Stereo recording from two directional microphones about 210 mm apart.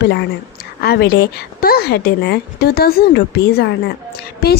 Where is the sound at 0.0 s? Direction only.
55° left (ahead or behind).